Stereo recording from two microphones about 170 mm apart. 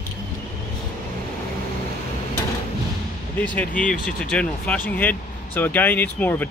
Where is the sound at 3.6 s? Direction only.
50° left (ahead or behind).